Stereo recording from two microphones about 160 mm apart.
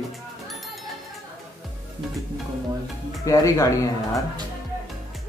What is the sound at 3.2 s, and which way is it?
Speech, 20° left (ahead or behind).